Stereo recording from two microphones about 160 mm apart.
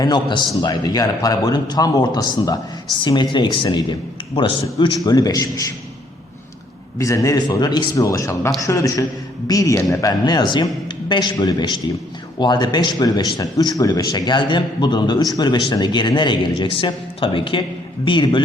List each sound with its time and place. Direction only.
0.0 s speech: 30° left (ahead or behind)
7.0 s speech: 20° left (ahead or behind)